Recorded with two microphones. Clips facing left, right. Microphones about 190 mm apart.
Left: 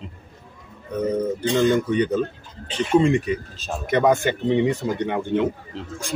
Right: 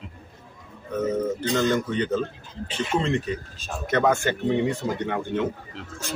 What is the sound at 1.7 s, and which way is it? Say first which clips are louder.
Speech: left 4 dB; 15° left (ahead or behind).